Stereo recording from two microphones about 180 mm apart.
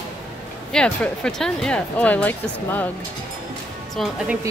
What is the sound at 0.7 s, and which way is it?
Speech, 5° left (ahead or behind).